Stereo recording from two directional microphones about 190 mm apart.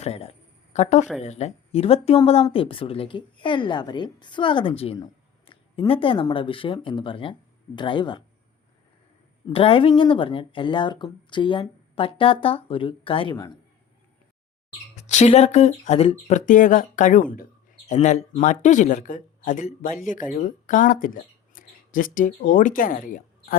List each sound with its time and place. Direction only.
0.0 s a sound: 30° left (ahead or behind)
1.2 s speech: 35° left (ahead or behind)
9.5 s speech: 30° left (ahead or behind)
15.0 s speech: 35° left (ahead or behind)